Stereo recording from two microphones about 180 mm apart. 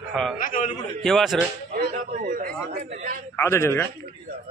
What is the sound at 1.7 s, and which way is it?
Speech, 45° right (ahead or behind).